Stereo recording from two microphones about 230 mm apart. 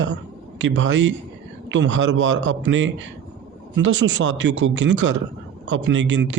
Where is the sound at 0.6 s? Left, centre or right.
Right.